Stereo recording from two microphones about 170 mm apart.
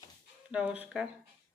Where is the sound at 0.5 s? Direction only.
10° right (ahead or behind).